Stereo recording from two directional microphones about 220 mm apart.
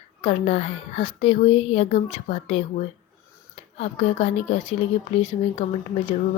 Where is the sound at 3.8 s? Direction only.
30° left (ahead or behind).